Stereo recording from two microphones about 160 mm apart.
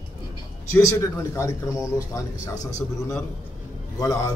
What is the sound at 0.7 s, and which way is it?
A man's voice, 15° left (ahead or behind).